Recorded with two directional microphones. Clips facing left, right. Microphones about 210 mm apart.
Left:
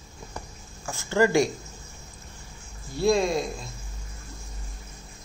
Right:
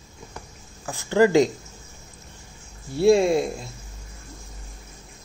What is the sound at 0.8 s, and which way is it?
Speech, 15° right (ahead or behind).